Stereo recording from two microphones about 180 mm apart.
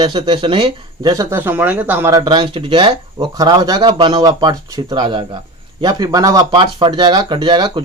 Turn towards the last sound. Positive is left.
turn(degrees=-25)  # may be behind; listen again after turning